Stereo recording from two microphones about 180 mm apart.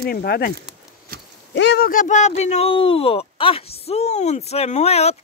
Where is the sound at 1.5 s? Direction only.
70° left (ahead or behind).